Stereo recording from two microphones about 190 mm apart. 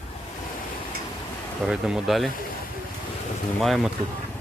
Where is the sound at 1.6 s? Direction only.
5° right (ahead or behind).